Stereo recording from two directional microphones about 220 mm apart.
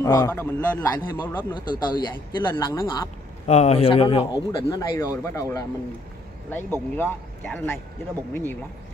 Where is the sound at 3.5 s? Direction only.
30° left (ahead or behind).